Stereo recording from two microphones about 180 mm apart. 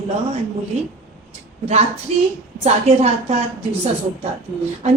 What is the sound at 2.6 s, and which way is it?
Speech, 35° right (ahead or behind).